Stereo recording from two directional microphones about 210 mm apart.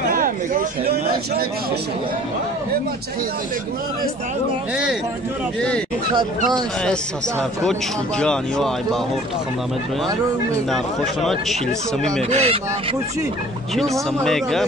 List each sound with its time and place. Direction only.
0.1 s speech: 40° right (ahead or behind)
8.2 s speech: 5° left (ahead or behind)
12.2 s speech: 30° right (ahead or behind)
14.2 s speech: centre (ahead or behind)